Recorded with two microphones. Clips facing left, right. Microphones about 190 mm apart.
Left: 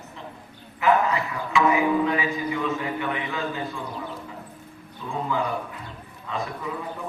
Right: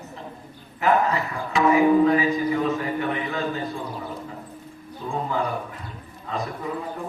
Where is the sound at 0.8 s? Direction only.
40° right (ahead or behind).